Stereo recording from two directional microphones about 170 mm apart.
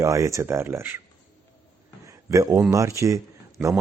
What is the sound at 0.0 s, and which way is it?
Speech, 20° right (ahead or behind).